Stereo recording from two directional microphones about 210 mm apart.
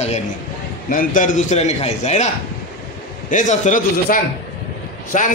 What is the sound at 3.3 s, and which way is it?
A man's voice, 35° left (ahead or behind).